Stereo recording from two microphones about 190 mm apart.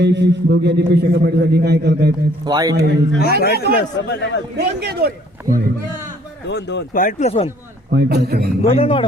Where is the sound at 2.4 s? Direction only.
20° right (ahead or behind).